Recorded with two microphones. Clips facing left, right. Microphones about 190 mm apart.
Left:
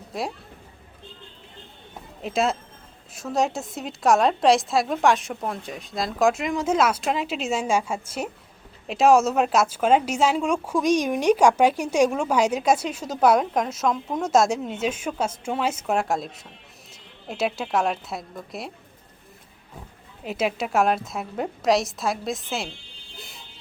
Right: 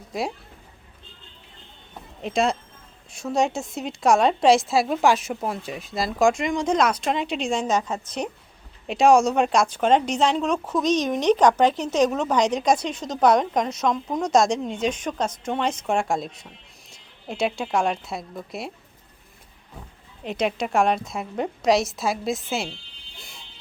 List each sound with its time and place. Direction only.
0.1 s speech: centre (ahead or behind)
2.2 s a woman's voice: centre (ahead or behind)
20.2 s a woman's voice: 5° left (ahead or behind)